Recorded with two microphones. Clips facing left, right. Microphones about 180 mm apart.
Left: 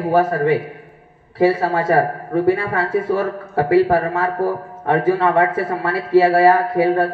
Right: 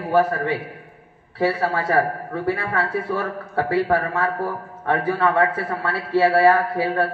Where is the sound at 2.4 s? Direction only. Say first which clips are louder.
Left 4 dB; 20° left (ahead or behind).